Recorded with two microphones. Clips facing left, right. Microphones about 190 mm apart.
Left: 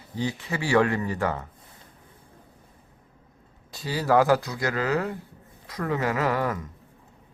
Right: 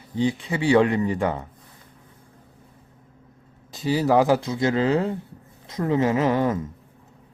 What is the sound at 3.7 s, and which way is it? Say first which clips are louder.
Speech: right 3 dB; 20° right (ahead or behind).